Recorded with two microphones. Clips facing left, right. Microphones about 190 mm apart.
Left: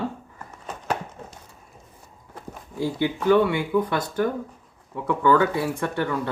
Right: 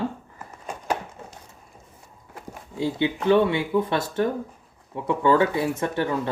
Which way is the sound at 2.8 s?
20° right (ahead or behind).